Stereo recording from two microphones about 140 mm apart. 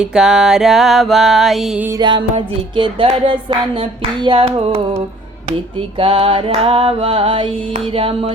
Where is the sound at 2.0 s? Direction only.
30° right (ahead or behind).